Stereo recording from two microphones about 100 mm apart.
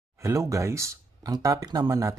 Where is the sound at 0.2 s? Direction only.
30° right (ahead or behind).